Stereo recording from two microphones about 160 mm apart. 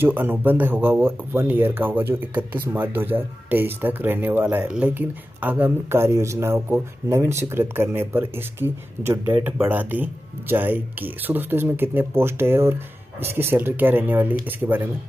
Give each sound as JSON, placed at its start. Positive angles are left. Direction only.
{"t": 0.0, "sound": "speech", "side_deg": -10}